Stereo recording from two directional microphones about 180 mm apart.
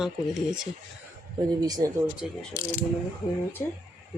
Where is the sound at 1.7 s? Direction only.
20° right (ahead or behind).